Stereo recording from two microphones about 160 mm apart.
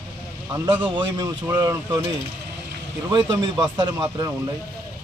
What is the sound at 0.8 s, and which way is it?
Speech, 25° right (ahead or behind).